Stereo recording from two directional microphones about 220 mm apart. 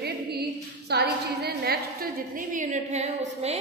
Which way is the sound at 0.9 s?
45° right (ahead or behind).